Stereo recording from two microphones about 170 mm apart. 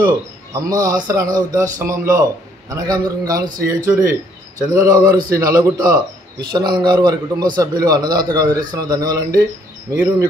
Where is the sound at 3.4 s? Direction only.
55° right (ahead or behind).